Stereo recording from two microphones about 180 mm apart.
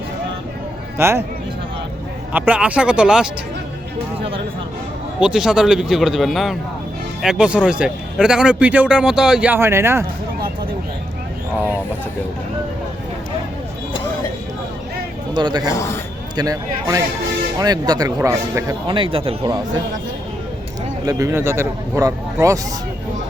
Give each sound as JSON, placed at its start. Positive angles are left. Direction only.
{"t": 0.9, "sound": "a man's voice", "side_deg": -15}
{"t": 2.3, "sound": "a man's voice", "side_deg": -10}
{"t": 5.2, "sound": "a man's voice", "side_deg": -5}
{"t": 15.4, "sound": "speech", "side_deg": -25}
{"t": 18.9, "sound": "speech", "side_deg": -30}
{"t": 21.0, "sound": "a man's voice", "side_deg": -20}